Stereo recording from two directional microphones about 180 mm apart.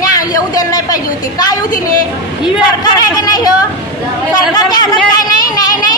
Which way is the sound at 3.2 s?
20° left (ahead or behind).